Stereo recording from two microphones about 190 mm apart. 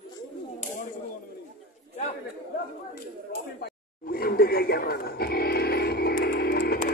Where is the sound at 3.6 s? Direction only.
55° left (ahead or behind).